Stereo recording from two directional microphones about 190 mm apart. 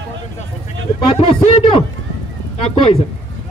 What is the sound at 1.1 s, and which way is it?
Speech, 30° left (ahead or behind).